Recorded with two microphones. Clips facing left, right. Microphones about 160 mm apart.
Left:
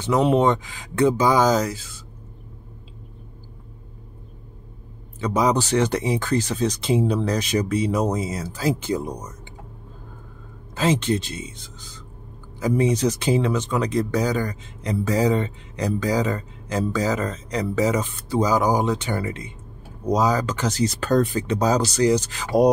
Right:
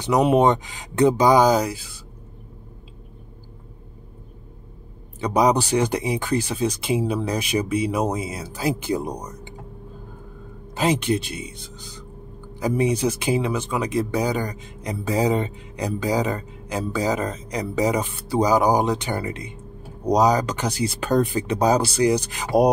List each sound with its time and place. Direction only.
0.0 s speech: 15° right (ahead or behind)
5.2 s speech: 15° right (ahead or behind)
10.8 s speech: 10° right (ahead or behind)